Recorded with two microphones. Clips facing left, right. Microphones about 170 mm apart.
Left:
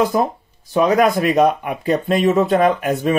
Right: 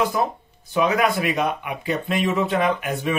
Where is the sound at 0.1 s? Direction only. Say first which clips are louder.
Left 5 dB; 35° left (ahead or behind).